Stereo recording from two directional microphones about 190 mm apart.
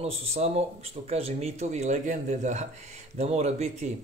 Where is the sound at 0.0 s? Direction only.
35° right (ahead or behind).